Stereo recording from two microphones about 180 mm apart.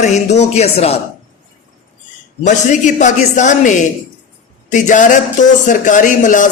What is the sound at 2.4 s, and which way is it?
Speech, 40° left (ahead or behind).